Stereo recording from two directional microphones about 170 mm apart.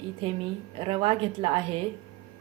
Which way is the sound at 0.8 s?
35° right (ahead or behind).